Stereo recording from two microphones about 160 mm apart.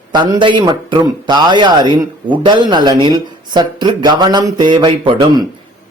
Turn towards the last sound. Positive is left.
turn(degrees=-30)  # may be behind; listen again after turning